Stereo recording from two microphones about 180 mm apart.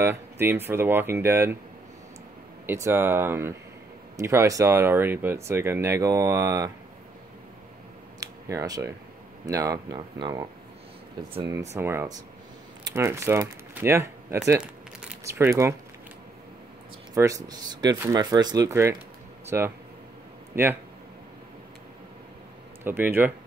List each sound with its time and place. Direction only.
0.0 s speech: 10° right (ahead or behind)
2.6 s speech: 10° right (ahead or behind)
8.2 s a sound: 20° right (ahead or behind)
9.5 s speech: 20° right (ahead or behind)
11.7 s speech: 15° right (ahead or behind)
17.1 s speech: 20° right (ahead or behind)
22.8 s speech: 10° right (ahead or behind)